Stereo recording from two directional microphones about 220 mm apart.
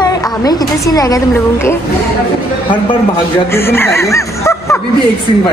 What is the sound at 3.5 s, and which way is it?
Speech, 10° left (ahead or behind).